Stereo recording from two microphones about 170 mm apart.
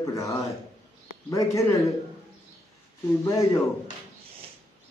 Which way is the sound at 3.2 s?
20° left (ahead or behind).